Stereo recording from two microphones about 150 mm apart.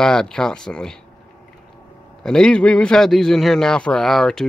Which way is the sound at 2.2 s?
5° left (ahead or behind).